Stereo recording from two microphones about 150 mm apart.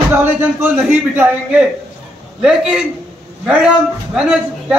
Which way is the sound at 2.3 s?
5° right (ahead or behind).